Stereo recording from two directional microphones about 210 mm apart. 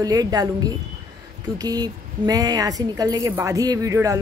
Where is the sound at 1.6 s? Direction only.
20° right (ahead or behind).